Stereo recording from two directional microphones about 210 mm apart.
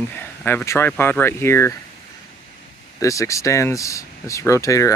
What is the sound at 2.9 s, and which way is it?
Speech, 15° left (ahead or behind).